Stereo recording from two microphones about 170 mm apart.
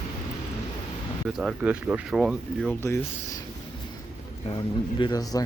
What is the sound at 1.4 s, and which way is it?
Speech, 5° right (ahead or behind).